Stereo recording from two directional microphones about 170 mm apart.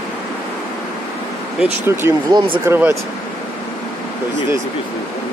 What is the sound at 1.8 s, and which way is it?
Speech, 15° right (ahead or behind).